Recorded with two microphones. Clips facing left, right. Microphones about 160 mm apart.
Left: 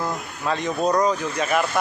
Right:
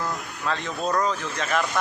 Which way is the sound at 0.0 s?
15° left (ahead or behind).